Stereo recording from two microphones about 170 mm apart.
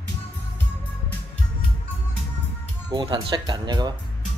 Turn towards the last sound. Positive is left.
turn(degrees=-25)  # may be behind; listen again after turning